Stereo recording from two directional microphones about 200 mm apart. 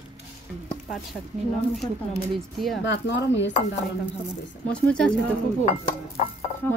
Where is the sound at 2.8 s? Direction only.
60° left (ahead or behind).